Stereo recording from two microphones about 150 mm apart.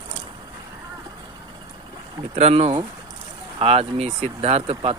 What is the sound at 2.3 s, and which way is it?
Speech, 40° right (ahead or behind).